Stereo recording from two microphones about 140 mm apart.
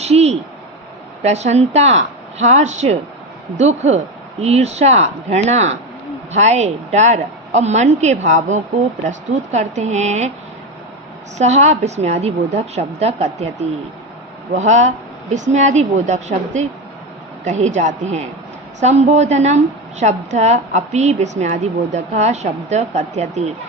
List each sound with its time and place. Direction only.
0.0 s a sound: 50° right (ahead or behind)
1.2 s a woman's voice: 55° right (ahead or behind)
11.3 s a woman's voice: 55° right (ahead or behind)